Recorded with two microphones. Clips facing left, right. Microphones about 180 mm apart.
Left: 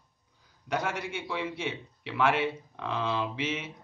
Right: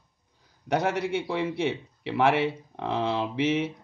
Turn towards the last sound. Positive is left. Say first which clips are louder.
# right 7 dB
turn(degrees=-65)  # may be behind; listen again after turning